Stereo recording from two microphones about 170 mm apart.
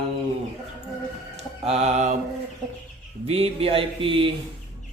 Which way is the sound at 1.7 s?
40° right (ahead or behind).